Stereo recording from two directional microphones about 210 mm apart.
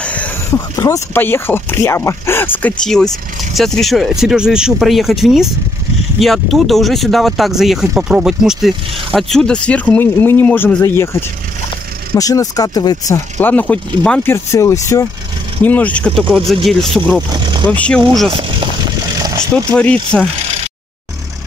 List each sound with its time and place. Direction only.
0.0 s speech: 5° left (ahead or behind)
17.3 s vehicle: 20° right (ahead or behind)
17.6 s speech: 5° left (ahead or behind)
18.3 s vehicle: 25° right (ahead or behind)
19.5 s speech: 5° left (ahead or behind)